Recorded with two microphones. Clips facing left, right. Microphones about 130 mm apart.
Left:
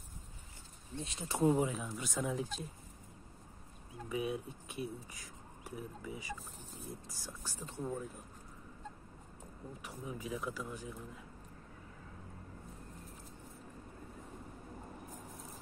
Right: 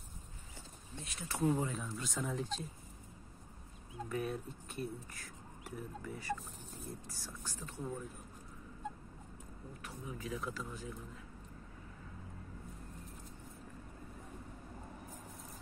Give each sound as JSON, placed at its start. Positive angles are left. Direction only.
{"t": 0.9, "sound": "speech", "side_deg": 20}
{"t": 1.7, "sound": "speech", "side_deg": 10}
{"t": 4.1, "sound": "speech", "side_deg": 10}
{"t": 7.4, "sound": "speech", "side_deg": 20}
{"t": 9.8, "sound": "speech", "side_deg": 15}